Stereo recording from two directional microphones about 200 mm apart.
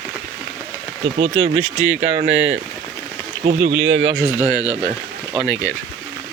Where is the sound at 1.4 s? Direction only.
70° right (ahead or behind).